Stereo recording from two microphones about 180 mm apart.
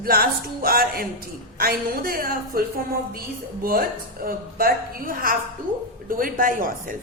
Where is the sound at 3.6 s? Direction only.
55° right (ahead or behind).